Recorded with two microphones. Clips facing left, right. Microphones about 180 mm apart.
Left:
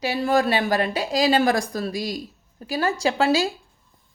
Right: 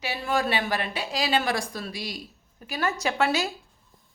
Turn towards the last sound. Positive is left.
turn(degrees=30)  # may be behind; listen again after turning